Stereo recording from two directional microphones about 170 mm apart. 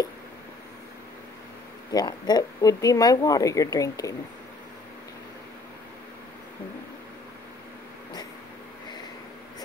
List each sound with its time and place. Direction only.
1.9 s speech: 25° left (ahead or behind)